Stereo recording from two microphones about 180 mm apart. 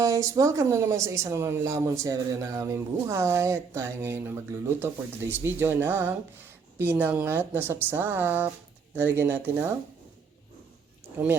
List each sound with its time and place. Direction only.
0.0 s speech: 15° right (ahead or behind)